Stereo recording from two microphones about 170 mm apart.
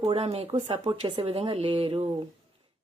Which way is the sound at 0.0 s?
35° right (ahead or behind).